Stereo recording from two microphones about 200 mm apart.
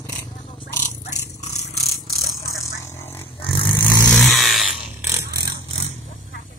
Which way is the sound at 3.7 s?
10° left (ahead or behind).